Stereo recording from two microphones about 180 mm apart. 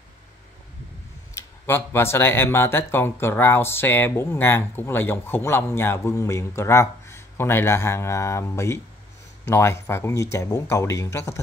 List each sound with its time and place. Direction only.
1.3 s speech: 15° left (ahead or behind)